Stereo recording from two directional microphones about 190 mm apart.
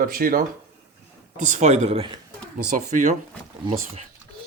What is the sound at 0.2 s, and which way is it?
Speech, 50° right (ahead or behind).